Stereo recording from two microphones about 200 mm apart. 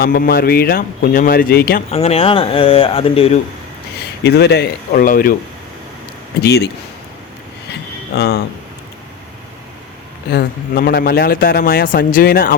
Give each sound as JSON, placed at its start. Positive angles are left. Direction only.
{"t": 0.0, "sound": "a man's voice", "side_deg": 50}
{"t": 1.9, "sound": "speech", "side_deg": 30}
{"t": 4.2, "sound": "speech", "side_deg": 55}
{"t": 4.9, "sound": "a man's voice", "side_deg": 45}
{"t": 6.4, "sound": "speech", "side_deg": 55}
{"t": 7.7, "sound": "a sound", "side_deg": 55}
{"t": 10.2, "sound": "a man's voice", "side_deg": 50}